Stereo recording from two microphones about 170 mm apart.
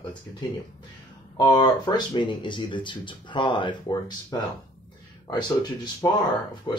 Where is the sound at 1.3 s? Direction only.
25° left (ahead or behind).